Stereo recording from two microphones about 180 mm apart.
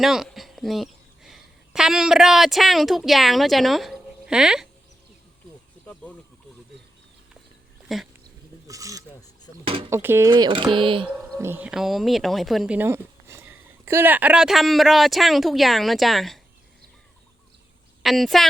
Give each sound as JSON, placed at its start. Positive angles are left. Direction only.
{"t": 0.0, "sound": "a woman's voice", "side_deg": 0}
{"t": 5.8, "sound": "a sound", "side_deg": 5}
{"t": 7.9, "sound": "speech", "side_deg": 0}
{"t": 8.6, "sound": "a sound", "side_deg": -20}
{"t": 9.6, "sound": "a sound", "side_deg": -30}
{"t": 9.9, "sound": "speech", "side_deg": -15}
{"t": 10.3, "sound": "speech", "side_deg": -25}
{"t": 11.3, "sound": "speech", "side_deg": -10}
{"t": 18.0, "sound": "speech", "side_deg": 0}